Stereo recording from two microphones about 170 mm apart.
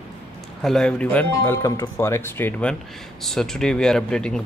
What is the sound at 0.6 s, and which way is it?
Speech, 5° left (ahead or behind).